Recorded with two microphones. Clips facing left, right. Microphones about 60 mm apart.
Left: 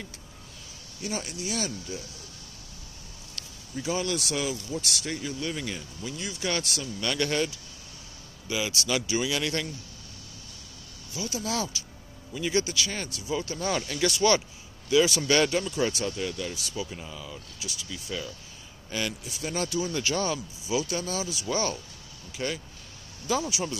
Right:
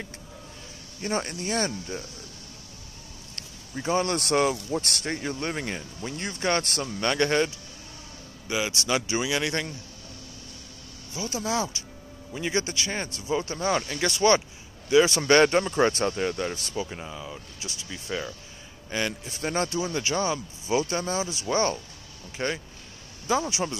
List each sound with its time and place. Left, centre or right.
1.0 s speech: right
3.3 s speech: right
11.1 s speech: right
16.8 s speech: right
20.6 s speech: right
23.3 s speech: right